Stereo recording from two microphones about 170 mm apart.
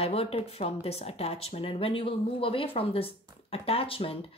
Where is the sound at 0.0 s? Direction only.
35° left (ahead or behind).